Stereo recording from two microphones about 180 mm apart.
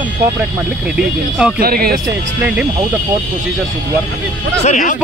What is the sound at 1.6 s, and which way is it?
Speech, 55° right (ahead or behind).